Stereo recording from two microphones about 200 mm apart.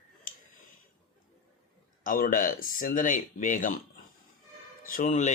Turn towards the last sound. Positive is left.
turn(degrees=40)  # may be behind; listen again after turning